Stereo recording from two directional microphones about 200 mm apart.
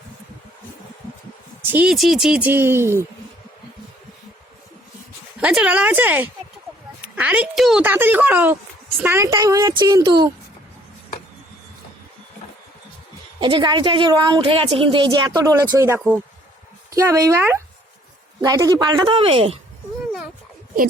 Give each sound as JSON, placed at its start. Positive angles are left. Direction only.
{"t": 1.7, "sound": "speech", "side_deg": -5}
{"t": 5.4, "sound": "speech", "side_deg": -5}
{"t": 13.4, "sound": "a woman's voice", "side_deg": -25}